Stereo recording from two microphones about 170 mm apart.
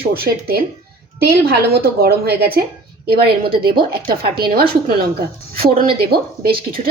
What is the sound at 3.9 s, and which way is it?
Speech, 65° right (ahead or behind).